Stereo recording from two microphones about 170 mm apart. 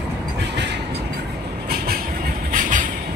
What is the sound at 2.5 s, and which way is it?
Train, 50° right (ahead or behind).